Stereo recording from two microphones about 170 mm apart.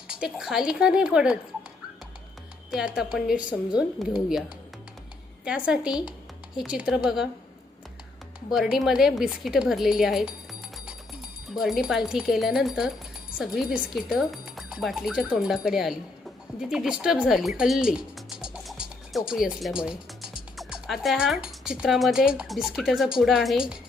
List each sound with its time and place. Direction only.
0.1 s speech: 5° right (ahead or behind)
2.6 s speech: 5° right (ahead or behind)
8.4 s speech: centre (ahead or behind)
11.8 s speech: 5° right (ahead or behind)